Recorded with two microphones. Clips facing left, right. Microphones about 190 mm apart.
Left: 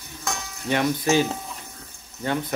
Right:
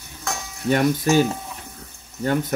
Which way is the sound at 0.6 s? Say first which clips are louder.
Right 3 dB; 45° right (ahead or behind).